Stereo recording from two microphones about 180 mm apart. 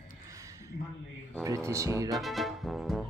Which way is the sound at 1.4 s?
15° right (ahead or behind).